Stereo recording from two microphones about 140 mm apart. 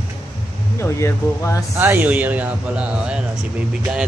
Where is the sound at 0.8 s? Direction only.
20° left (ahead or behind).